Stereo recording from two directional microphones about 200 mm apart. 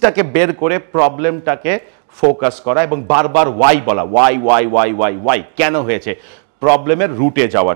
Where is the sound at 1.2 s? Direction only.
Centre (ahead or behind).